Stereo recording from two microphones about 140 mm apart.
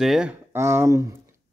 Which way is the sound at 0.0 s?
5° right (ahead or behind).